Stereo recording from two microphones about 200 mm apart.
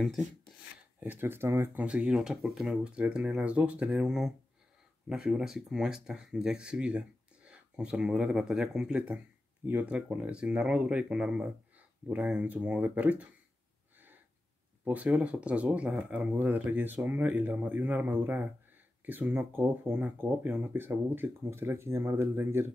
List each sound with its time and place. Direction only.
0.9 s speech: 10° right (ahead or behind)
13.9 s a sound: 10° right (ahead or behind)
14.9 s speech: 5° right (ahead or behind)